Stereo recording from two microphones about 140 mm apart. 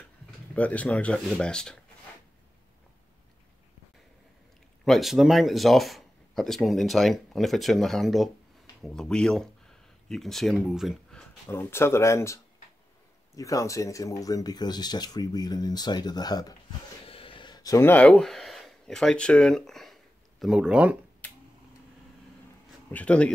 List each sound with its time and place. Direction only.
0.6 s speech: 10° left (ahead or behind)
4.8 s speech: centre (ahead or behind)
11.4 s speech: 20° left (ahead or behind)
13.4 s speech: 25° left (ahead or behind)
17.0 s a sound: 40° left (ahead or behind); by 17.9 s 25° left (ahead or behind)
17.9 s speech: 10° left (ahead or behind); by 21.0 s 10° right (ahead or behind)
22.8 s speech: 10° left (ahead or behind)